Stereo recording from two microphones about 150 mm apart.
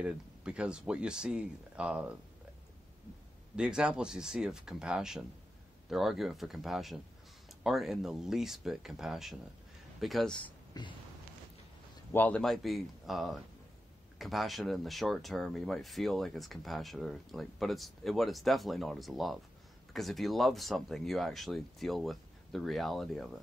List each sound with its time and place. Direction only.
0.0 s speech: 5° right (ahead or behind)
3.5 s speech: 5° right (ahead or behind)
10.7 s a sound: 30° left (ahead or behind)
12.1 s speech: 10° left (ahead or behind)